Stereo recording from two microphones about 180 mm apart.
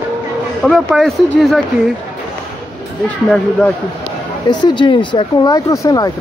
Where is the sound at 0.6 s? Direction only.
Centre (ahead or behind).